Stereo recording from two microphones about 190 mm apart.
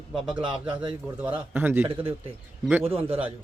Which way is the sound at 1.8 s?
30° right (ahead or behind).